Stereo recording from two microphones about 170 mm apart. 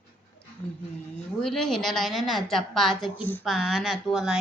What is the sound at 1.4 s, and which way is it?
A woman's voice, 5° left (ahead or behind).